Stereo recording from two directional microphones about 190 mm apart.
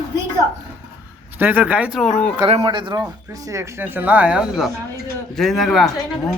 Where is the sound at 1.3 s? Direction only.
10° right (ahead or behind).